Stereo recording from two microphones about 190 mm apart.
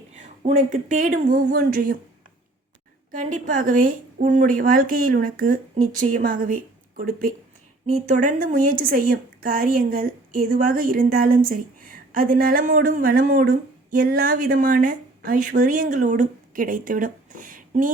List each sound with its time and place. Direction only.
0.1 s speech: 40° right (ahead or behind)
3.1 s speech: 40° right (ahead or behind)